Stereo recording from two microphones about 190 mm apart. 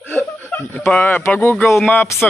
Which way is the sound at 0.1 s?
10° left (ahead or behind).